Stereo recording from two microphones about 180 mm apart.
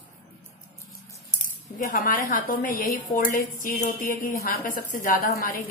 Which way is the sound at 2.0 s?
45° left (ahead or behind).